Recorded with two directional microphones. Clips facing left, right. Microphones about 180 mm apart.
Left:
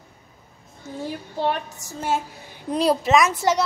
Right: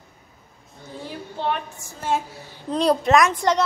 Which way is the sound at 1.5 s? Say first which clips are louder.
Even; 40° left (ahead or behind).